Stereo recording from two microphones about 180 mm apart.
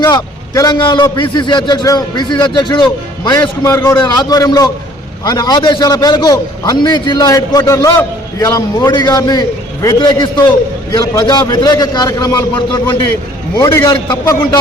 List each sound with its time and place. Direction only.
0.0 s a man's voice: 20° left (ahead or behind)